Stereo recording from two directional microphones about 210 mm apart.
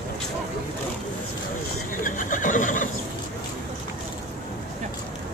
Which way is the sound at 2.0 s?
40° left (ahead or behind).